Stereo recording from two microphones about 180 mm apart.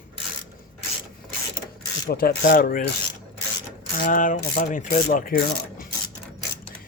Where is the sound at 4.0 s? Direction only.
45° left (ahead or behind).